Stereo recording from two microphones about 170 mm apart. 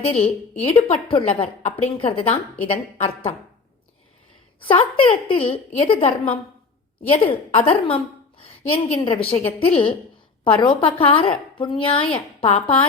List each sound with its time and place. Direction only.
0.0 s a woman's voice: 35° left (ahead or behind)
4.6 s a woman's voice: 30° left (ahead or behind)